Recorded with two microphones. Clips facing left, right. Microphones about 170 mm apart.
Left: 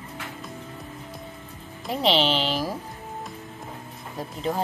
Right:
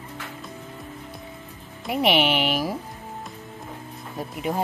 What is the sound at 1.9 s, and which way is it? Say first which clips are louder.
Speech: right 1 dB; 15° right (ahead or behind).